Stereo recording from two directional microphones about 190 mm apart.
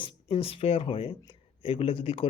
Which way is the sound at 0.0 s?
30° left (ahead or behind).